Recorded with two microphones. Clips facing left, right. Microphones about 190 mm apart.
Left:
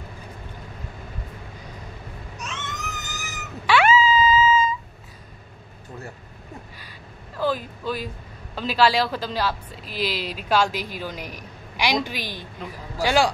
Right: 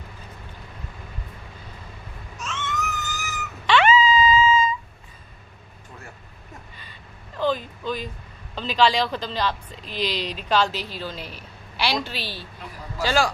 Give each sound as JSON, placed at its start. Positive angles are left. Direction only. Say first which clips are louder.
{"t": 2.3, "sound": "cat", "louder": "right 5 dB", "side_deg": 15}
{"t": 3.6, "sound": "dog", "louder": "even", "side_deg": 10}
{"t": 7.3, "sound": "a sound", "louder": "right 1 dB", "side_deg": 5}
{"t": 8.5, "sound": "a woman's voice", "louder": "left 1 dB", "side_deg": 10}